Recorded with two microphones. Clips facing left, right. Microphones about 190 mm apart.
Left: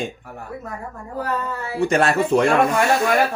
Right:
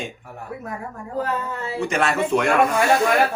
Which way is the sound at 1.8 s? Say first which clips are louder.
Left 4 dB; 35° left (ahead or behind).